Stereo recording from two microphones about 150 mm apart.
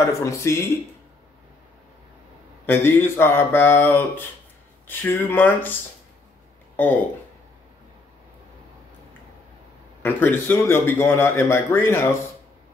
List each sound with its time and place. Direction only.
0.0 s speech: 20° left (ahead or behind)
2.6 s a man's voice: 15° left (ahead or behind)
6.8 s a man's voice: 10° left (ahead or behind)
10.0 s a man's voice: 15° left (ahead or behind)